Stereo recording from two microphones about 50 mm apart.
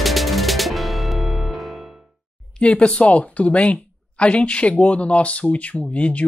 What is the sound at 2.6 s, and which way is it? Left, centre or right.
Speech, centre.